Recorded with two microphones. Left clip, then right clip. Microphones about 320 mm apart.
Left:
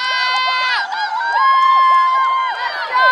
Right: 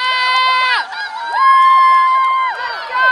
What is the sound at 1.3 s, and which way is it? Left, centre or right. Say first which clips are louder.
Crowd: right 3 dB; right.